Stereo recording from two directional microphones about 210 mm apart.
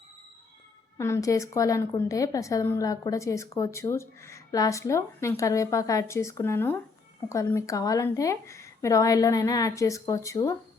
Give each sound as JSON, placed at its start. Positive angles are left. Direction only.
{"t": 0.9, "sound": "a woman's voice", "side_deg": 15}